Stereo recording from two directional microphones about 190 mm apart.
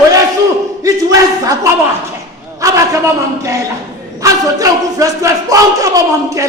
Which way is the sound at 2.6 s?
15° right (ahead or behind).